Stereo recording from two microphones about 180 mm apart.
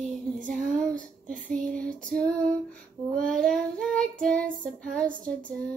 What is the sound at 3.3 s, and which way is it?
Child singing, 5° left (ahead or behind).